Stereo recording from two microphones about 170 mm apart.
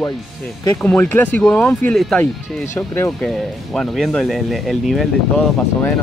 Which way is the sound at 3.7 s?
Centre (ahead or behind).